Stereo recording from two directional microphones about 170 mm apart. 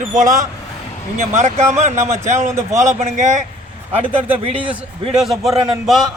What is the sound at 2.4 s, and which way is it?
Speech, 15° right (ahead or behind).